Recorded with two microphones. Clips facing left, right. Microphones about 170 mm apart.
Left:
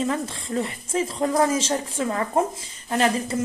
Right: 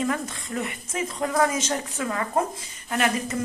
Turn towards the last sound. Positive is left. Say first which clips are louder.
# left 3 dB
turn(degrees=30)  # may be behind; listen again after turning